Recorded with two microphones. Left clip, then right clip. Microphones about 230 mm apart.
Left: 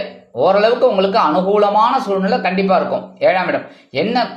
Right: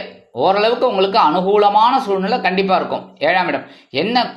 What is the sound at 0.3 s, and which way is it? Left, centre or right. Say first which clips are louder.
Speech: left 2 dB; right.